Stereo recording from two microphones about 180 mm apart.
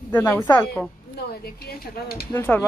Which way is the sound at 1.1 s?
60° left (ahead or behind).